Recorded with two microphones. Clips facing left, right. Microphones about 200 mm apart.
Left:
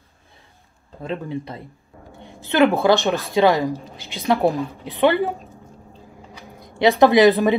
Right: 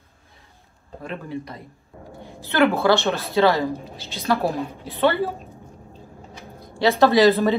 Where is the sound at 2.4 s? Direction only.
15° left (ahead or behind).